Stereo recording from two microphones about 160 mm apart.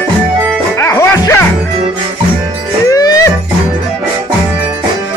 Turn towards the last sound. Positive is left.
turn(degrees=20)  # may be behind; listen again after turning